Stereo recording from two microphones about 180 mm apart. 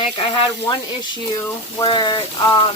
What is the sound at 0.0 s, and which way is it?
Speech, 30° left (ahead or behind).